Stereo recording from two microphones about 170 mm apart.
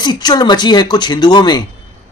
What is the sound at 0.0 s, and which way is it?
Speech, 25° left (ahead or behind).